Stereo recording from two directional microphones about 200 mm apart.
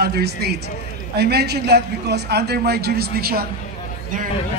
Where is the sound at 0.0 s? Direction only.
50° right (ahead or behind).